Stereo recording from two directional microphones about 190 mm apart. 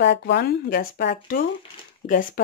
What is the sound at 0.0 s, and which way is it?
Speech, 60° left (ahead or behind).